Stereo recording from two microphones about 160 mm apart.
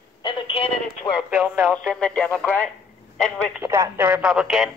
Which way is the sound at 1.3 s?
10° right (ahead or behind).